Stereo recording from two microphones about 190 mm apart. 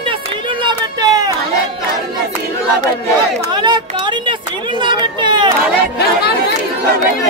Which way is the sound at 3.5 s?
25° right (ahead or behind).